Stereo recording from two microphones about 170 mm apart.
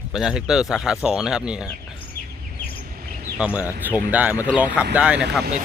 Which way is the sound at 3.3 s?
5° right (ahead or behind).